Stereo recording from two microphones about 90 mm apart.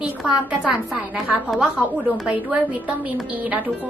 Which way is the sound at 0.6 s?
10° right (ahead or behind).